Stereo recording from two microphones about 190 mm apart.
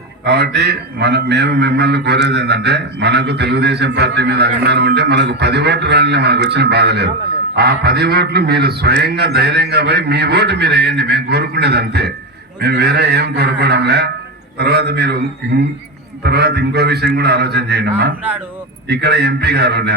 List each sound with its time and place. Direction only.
0.3 s a man's voice: 60° right (ahead or behind)